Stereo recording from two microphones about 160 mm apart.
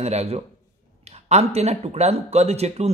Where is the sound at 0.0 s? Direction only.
40° right (ahead or behind).